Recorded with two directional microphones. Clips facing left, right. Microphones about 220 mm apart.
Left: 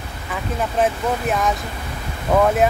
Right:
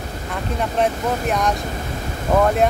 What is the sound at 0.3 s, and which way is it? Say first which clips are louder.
Speech: even; centre (ahead or behind).